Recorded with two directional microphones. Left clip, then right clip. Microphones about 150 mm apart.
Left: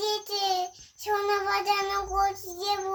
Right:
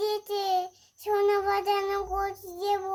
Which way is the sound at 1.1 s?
10° right (ahead or behind).